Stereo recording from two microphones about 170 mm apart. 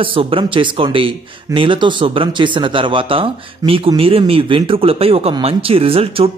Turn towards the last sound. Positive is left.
turn(degrees=-35)  # may be behind; listen again after turning